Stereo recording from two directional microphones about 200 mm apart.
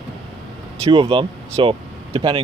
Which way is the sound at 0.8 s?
25° right (ahead or behind).